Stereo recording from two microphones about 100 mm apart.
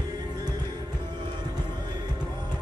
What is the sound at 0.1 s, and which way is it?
Music, 45° right (ahead or behind).